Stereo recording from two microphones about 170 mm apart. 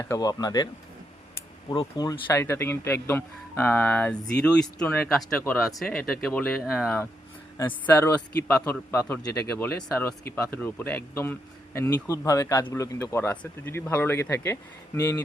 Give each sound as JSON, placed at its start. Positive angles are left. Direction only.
{"t": 0.0, "sound": "speech", "side_deg": 20}
{"t": 1.7, "sound": "speech", "side_deg": 25}
{"t": 7.6, "sound": "speech", "side_deg": 10}